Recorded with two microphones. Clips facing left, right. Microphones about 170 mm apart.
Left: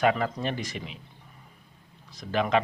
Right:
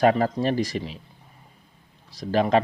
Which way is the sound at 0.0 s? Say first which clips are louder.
Right 5 dB; 35° right (ahead or behind).